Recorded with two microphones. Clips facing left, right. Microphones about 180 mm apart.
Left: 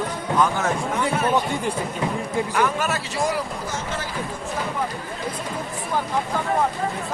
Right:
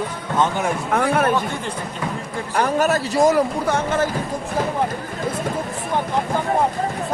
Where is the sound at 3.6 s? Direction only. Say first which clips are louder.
Right 9 dB; 55° right (ahead or behind).